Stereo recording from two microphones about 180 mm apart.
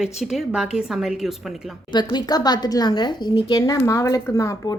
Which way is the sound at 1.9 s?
25° left (ahead or behind).